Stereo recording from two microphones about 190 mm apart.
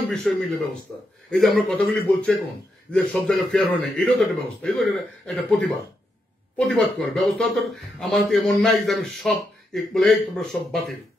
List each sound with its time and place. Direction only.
0.1 s a man's voice: 5° left (ahead or behind)